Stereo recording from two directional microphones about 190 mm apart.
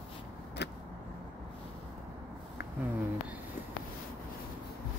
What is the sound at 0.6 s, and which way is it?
Vehicle, 65° left (ahead or behind).